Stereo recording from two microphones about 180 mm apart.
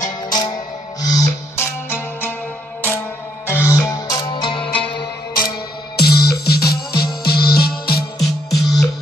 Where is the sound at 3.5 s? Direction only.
15° left (ahead or behind).